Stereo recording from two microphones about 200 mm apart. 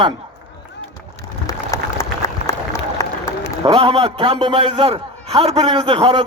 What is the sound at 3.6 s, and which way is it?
A man's voice, 30° right (ahead or behind).